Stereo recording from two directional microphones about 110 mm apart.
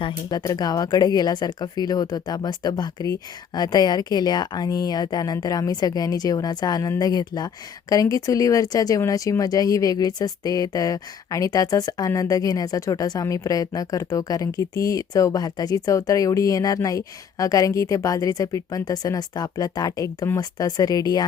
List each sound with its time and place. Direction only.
0.0 s speech: 35° left (ahead or behind)